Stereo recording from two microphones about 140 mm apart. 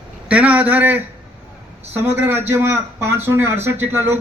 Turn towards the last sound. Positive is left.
turn(degrees=-15)  # may be behind; listen again after turning